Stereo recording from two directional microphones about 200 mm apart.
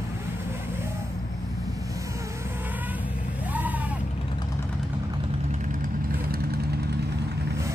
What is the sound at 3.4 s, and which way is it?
Vehicle, 10° right (ahead or behind).